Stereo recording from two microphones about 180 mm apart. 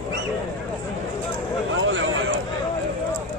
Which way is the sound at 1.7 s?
90° right.